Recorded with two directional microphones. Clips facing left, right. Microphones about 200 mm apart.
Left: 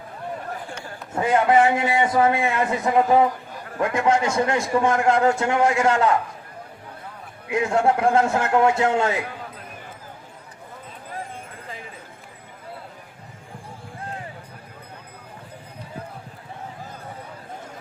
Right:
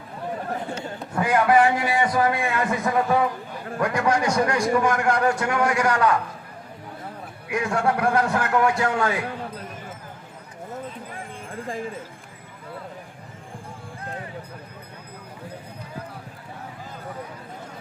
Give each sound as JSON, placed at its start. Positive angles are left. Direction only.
{"t": 0.7, "sound": "speech", "side_deg": -25}
{"t": 1.1, "sound": "a man's voice", "side_deg": 25}
{"t": 7.5, "sound": "a man's voice", "side_deg": 25}